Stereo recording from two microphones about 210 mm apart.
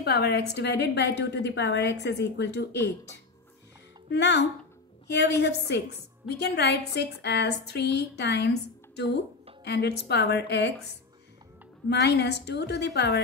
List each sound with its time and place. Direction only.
0.0 s a woman's voice: 50° left (ahead or behind)
4.1 s a woman's voice: 55° left (ahead or behind)
11.9 s a woman's voice: 50° left (ahead or behind)